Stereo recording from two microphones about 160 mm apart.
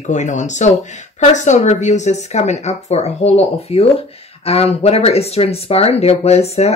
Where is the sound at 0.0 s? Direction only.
50° left (ahead or behind).